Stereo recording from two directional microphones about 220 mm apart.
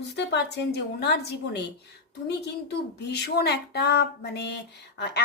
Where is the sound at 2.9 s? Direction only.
50° left (ahead or behind).